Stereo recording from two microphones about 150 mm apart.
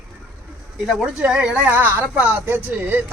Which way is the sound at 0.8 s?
5° right (ahead or behind).